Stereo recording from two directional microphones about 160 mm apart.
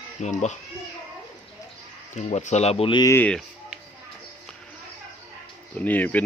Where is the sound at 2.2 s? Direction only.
45° left (ahead or behind); by 3.1 s 30° left (ahead or behind).